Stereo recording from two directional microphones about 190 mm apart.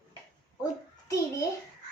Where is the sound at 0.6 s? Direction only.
15° left (ahead or behind).